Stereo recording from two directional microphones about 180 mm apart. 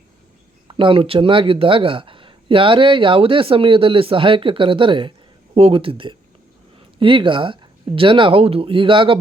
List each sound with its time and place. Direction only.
0.7 s speech: 30° right (ahead or behind)